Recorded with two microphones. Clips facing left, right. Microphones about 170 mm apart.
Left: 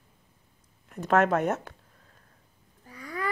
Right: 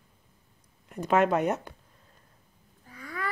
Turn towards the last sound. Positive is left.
turn(degrees=40)  # may be behind; listen again after turning